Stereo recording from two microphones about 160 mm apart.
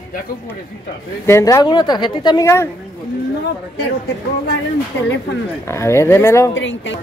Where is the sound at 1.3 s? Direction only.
20° left (ahead or behind).